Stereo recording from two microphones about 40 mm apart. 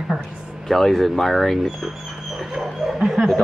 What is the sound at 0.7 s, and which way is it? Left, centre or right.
Speech, centre.